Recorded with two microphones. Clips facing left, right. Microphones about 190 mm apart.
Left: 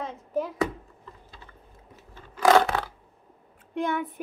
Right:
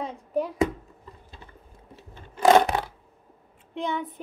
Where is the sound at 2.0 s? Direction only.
25° right (ahead or behind).